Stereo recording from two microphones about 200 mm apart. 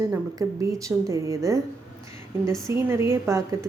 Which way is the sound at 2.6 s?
15° right (ahead or behind).